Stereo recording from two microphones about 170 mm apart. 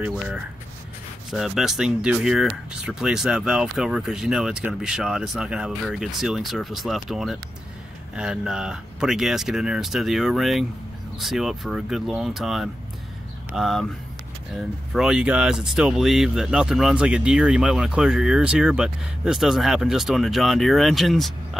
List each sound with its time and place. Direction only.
1.3 s speech: centre (ahead or behind)